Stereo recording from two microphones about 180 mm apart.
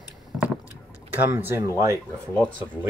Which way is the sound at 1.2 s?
10° right (ahead or behind).